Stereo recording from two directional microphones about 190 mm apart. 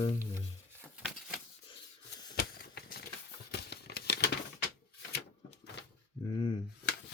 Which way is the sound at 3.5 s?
60° left (ahead or behind).